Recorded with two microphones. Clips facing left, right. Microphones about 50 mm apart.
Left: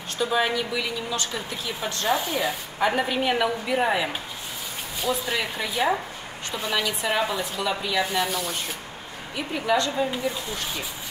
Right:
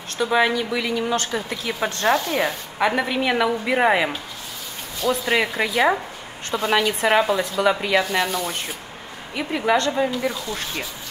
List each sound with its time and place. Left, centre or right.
0.2 s a woman's voice: right
5.3 s a woman's voice: right
9.3 s a woman's voice: right